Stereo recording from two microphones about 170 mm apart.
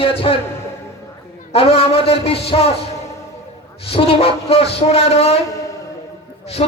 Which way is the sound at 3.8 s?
35° left (ahead or behind).